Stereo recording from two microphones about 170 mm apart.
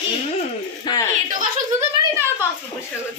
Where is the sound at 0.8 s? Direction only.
20° left (ahead or behind).